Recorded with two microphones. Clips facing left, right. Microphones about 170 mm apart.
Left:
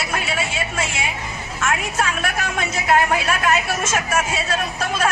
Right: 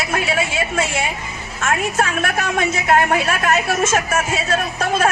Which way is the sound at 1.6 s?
45° right (ahead or behind).